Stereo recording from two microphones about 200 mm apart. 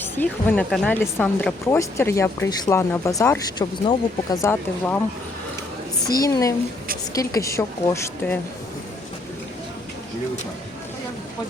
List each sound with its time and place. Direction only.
0.0 s speech: 10° left (ahead or behind)
6.1 s speech: 20° left (ahead or behind)